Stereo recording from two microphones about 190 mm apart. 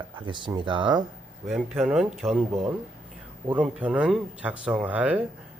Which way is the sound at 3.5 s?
5° right (ahead or behind).